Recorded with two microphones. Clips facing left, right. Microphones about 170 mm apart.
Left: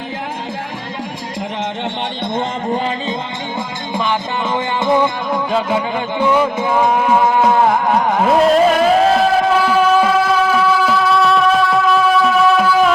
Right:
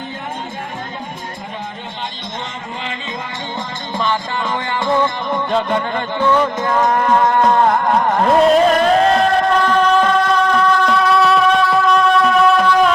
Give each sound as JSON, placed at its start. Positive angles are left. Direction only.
{"t": 2.3, "sound": "speech", "side_deg": 55}
{"t": 3.9, "sound": "music", "side_deg": 15}